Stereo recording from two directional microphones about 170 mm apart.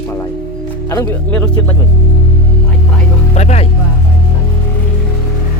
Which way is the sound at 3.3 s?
40° left (ahead or behind).